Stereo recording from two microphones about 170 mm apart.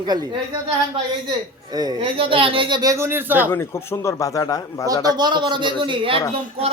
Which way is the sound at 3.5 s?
15° left (ahead or behind).